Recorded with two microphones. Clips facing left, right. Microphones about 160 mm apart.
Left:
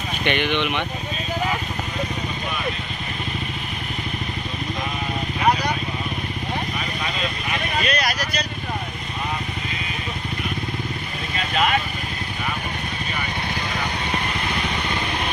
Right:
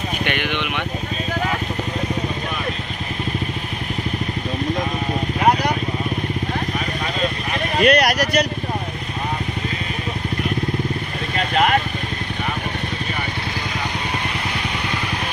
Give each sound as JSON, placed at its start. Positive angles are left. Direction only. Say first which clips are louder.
{"t": 0.3, "sound": "speech", "louder": "left 5 dB", "side_deg": -10}
{"t": 7.8, "sound": "vehicle", "louder": "right 13 dB", "side_deg": -70}
{"t": 11.5, "sound": "vehicle", "louder": "right 4 dB", "side_deg": -45}